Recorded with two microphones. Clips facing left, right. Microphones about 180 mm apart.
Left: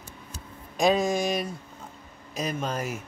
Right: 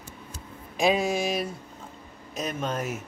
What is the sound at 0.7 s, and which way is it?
Speech, 5° right (ahead or behind).